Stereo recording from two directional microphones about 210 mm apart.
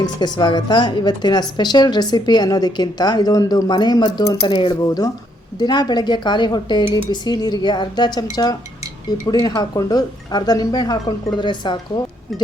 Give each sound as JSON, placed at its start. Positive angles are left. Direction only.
{"t": 0.0, "sound": "a woman's voice", "side_deg": 20}